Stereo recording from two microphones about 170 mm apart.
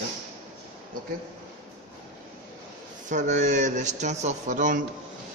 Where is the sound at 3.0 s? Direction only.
45° right (ahead or behind).